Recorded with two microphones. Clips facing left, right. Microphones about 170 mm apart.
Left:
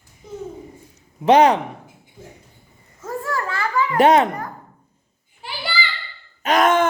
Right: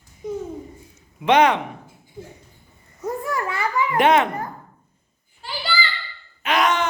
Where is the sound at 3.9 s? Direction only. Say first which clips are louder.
Left 3 dB; 35° left (ahead or behind).